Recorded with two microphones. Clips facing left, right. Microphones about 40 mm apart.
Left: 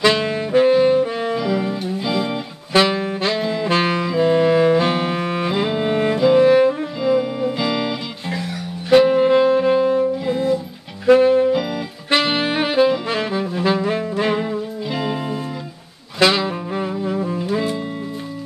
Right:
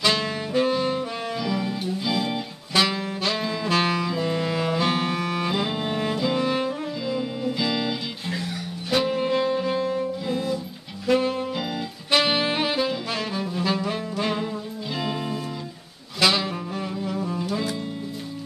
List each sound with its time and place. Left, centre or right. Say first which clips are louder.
0.0 s saxophone: left 6 dB; left
1.4 s music: left 5 dB; left
2.7 s saxophone: left 6 dB; left
5.7 s music: left 7 dB; left
8.9 s music: left 10 dB; left
12.2 s saxophone: left 2 dB; left
16.2 s music: left 5 dB; left